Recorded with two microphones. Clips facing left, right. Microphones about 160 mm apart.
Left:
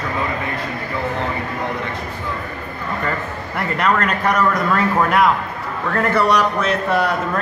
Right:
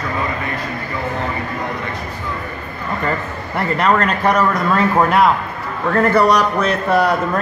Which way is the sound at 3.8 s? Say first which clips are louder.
Right 2 dB; 30° right (ahead or behind).